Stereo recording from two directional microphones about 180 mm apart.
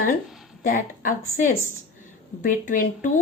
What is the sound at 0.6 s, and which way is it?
A woman's voice, 50° left (ahead or behind).